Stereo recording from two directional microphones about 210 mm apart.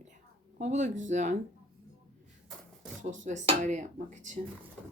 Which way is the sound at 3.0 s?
35° right (ahead or behind).